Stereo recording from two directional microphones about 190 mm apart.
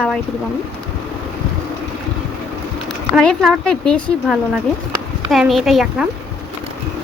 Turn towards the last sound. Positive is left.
turn(degrees=0)  # may be behind; listen again after turning